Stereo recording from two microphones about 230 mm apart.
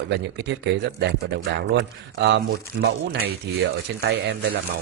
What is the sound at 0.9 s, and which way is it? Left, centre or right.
A man's voice, right.